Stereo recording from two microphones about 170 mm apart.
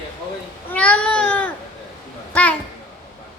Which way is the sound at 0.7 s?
10° left (ahead or behind).